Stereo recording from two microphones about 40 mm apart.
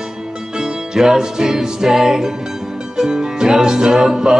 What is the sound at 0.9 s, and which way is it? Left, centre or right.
Music, centre.